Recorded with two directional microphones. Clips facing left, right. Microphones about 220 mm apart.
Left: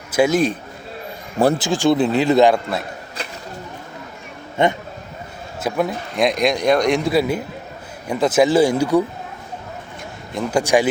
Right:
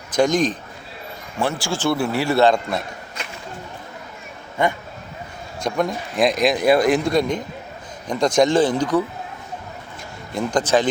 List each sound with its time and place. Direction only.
0.1 s a man's voice: 5° left (ahead or behind)
1.5 s speech: 20° left (ahead or behind)
4.6 s a man's voice: 25° left (ahead or behind)
5.5 s speech: 5° left (ahead or behind)
10.3 s speech: 10° left (ahead or behind)